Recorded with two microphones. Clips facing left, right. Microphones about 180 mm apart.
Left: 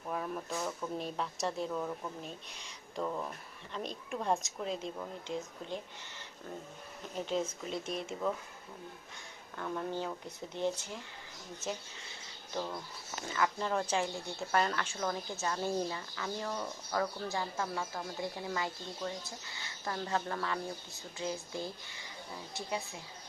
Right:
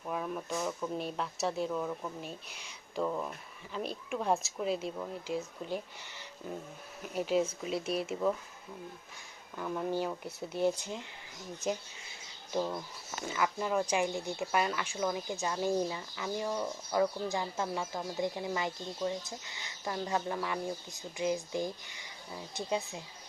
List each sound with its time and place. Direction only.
0.1 s speech: centre (ahead or behind)
9.6 s speech: 5° right (ahead or behind)
12.5 s speech: 15° right (ahead or behind)